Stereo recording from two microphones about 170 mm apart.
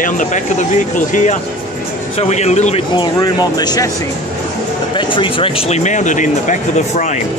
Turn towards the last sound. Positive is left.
turn(degrees=45)  # may be behind; listen again after turning